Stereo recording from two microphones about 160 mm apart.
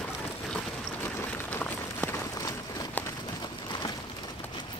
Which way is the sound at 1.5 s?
10° left (ahead or behind).